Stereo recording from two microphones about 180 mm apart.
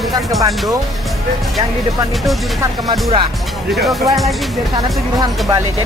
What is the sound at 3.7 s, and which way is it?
Speech, centre (ahead or behind).